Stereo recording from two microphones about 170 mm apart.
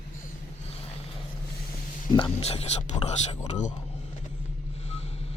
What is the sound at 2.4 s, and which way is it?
Speech, 40° left (ahead or behind).